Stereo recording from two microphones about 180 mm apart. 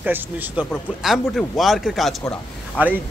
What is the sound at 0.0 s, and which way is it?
Speech, 10° right (ahead or behind).